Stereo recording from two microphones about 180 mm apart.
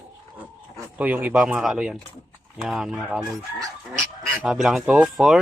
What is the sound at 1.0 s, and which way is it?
Speech, 10° right (ahead or behind).